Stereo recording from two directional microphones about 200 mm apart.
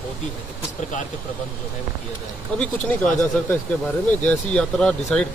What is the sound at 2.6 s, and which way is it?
Speech, 5° left (ahead or behind).